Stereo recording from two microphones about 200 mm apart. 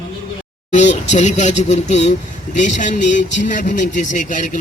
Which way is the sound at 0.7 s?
35° left (ahead or behind).